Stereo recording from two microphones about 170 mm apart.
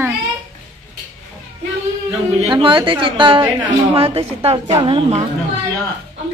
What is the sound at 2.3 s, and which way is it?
A woman's voice, 30° right (ahead or behind).